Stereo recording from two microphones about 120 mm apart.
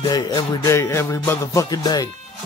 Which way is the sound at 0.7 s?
25° left (ahead or behind).